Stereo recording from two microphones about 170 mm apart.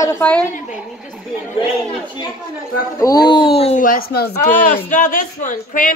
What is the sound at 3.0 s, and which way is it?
Speech, 25° left (ahead or behind).